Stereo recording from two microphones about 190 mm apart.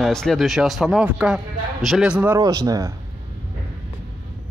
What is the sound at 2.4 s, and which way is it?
Speech, 20° right (ahead or behind).